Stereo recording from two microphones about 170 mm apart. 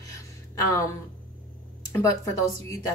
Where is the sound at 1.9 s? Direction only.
20° left (ahead or behind).